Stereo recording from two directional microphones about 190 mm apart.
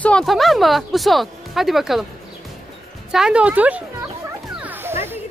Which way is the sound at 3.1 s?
5° right (ahead or behind).